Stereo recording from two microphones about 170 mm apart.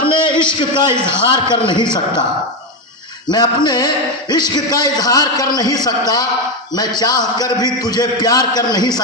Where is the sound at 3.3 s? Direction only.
25° left (ahead or behind).